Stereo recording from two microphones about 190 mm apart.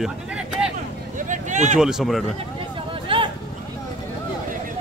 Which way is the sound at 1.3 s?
40° right (ahead or behind).